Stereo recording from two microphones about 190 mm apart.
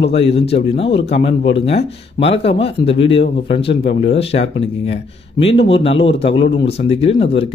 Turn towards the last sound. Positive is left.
turn(degrees=30)  # may be behind; listen again after turning